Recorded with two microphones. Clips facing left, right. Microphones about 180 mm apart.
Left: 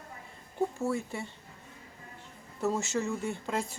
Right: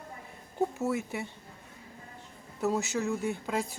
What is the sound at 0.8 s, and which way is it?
Speech, 20° right (ahead or behind).